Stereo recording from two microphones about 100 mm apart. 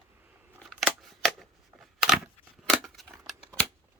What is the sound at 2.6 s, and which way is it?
Scissors, 5° left (ahead or behind).